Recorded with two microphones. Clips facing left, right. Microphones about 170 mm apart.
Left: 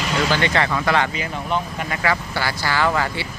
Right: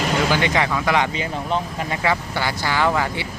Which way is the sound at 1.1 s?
25° right (ahead or behind).